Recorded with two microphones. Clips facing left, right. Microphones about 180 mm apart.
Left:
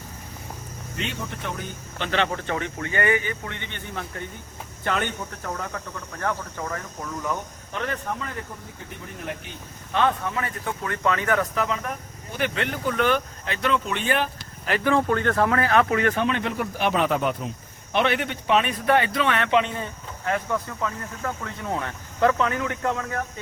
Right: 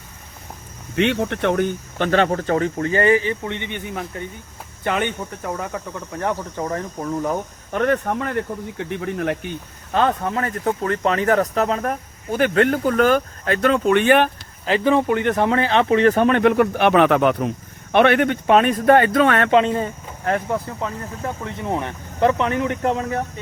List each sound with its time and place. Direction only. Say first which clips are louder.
0.9 s speech: right 13 dB; 70° right (ahead or behind); by 3.8 s 20° right (ahead or behind)
5.4 s speech: right 5 dB; 10° right (ahead or behind)
6.1 s speech: right 5 dB; 25° right (ahead or behind); by 9.4 s 75° right (ahead or behind)
9.9 s speech: right 4 dB; 40° right (ahead or behind)
11.3 s speech: right 6 dB; 40° right (ahead or behind); by 14.3 s 70° right (ahead or behind)
14.6 s speech: right 4 dB; 25° right (ahead or behind)
16.1 s speech: right 10 dB; 50° right (ahead or behind); by 23.2 s 25° right (ahead or behind)